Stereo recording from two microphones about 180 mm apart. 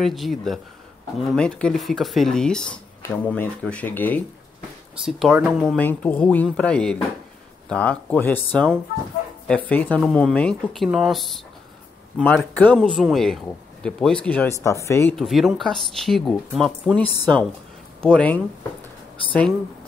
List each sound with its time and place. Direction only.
0.0 s speech: centre (ahead or behind)
5.0 s speech: centre (ahead or behind); by 15.1 s 15° left (ahead or behind)
15.1 s speech: centre (ahead or behind)